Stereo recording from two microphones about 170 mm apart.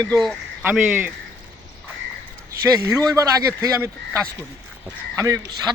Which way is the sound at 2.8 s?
15° right (ahead or behind).